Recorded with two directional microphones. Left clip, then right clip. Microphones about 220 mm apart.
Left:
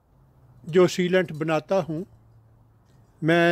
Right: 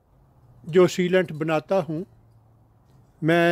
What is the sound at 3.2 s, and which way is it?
Speech, centre (ahead or behind).